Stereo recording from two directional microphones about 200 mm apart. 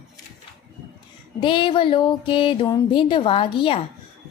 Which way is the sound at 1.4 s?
25° left (ahead or behind).